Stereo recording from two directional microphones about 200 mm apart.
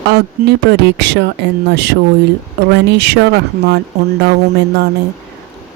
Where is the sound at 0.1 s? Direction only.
60° right (ahead or behind).